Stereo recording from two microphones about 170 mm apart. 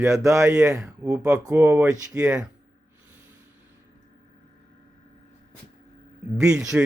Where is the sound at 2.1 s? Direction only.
5° right (ahead or behind).